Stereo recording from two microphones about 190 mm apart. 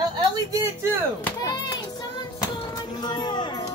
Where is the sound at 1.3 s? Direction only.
15° left (ahead or behind).